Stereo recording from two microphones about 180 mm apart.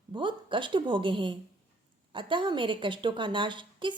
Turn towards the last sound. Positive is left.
turn(degrees=-25)  # may be behind; listen again after turning